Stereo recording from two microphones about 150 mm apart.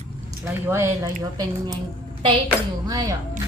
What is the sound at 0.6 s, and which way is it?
Speech, 15° right (ahead or behind).